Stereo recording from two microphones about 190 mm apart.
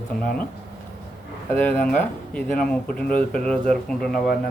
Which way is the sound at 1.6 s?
5° left (ahead or behind).